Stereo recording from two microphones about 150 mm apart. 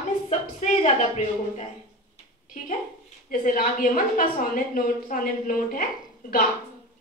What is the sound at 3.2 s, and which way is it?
A woman's voice, 65° left (ahead or behind).